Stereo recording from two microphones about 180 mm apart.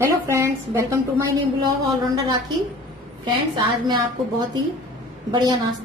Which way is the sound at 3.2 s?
25° right (ahead or behind).